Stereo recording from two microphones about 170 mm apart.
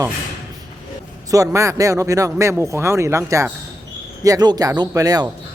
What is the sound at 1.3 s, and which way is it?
A man's voice, 20° right (ahead or behind).